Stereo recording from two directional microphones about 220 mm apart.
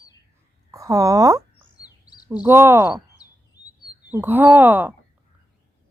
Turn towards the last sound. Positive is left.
turn(degrees=-10)  # may be behind; listen again after turning